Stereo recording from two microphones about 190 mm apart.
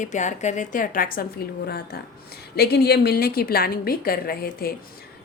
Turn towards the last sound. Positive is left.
turn(degrees=50)  # may be behind; listen again after turning